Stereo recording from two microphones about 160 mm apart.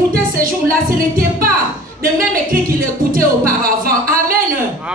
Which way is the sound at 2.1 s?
60° right (ahead or behind).